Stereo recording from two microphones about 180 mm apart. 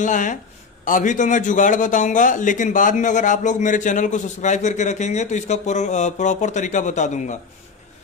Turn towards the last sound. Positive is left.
turn(degrees=40)  # may be behind; listen again after turning